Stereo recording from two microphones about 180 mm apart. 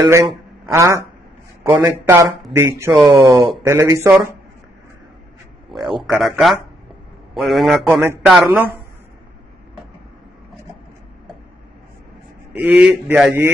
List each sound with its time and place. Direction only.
0.0 s a man's voice: 15° right (ahead or behind)
5.7 s a man's voice: centre (ahead or behind)
7.9 s a man's voice: 10° right (ahead or behind)
12.5 s a man's voice: 10° right (ahead or behind)